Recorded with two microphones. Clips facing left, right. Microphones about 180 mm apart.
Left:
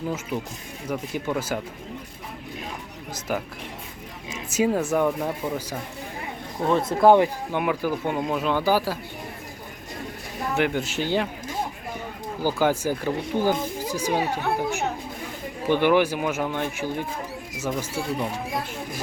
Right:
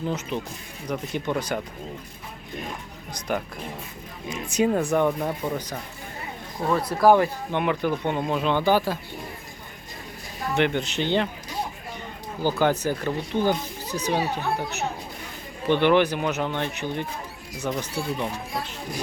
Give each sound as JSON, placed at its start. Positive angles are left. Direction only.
{"t": 0.1, "sound": "speech", "side_deg": 5}
{"t": 3.2, "sound": "speech", "side_deg": 5}
{"t": 6.7, "sound": "speech", "side_deg": 25}
{"t": 7.5, "sound": "speech", "side_deg": 5}
{"t": 10.5, "sound": "speech", "side_deg": 5}